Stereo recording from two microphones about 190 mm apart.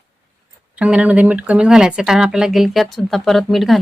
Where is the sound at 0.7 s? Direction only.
5° right (ahead or behind).